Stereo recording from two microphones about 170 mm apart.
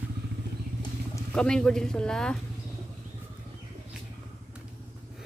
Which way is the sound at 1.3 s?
5° left (ahead or behind).